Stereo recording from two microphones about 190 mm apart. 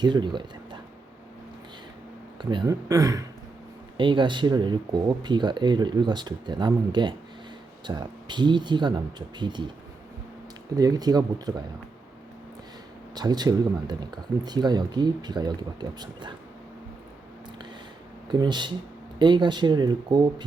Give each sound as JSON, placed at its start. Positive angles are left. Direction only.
{"t": 0.0, "sound": "speech", "side_deg": -25}
{"t": 2.4, "sound": "speech", "side_deg": -25}
{"t": 10.8, "sound": "speech", "side_deg": -20}
{"t": 13.1, "sound": "speech", "side_deg": -20}
{"t": 18.3, "sound": "speech", "side_deg": -25}